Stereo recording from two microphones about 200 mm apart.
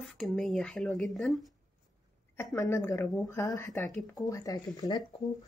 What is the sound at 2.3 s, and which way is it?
Speech, 15° left (ahead or behind).